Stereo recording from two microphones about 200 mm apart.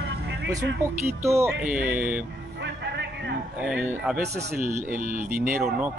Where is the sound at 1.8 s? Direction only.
10° right (ahead or behind).